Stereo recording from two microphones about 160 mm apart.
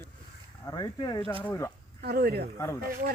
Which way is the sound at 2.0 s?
70° right (ahead or behind).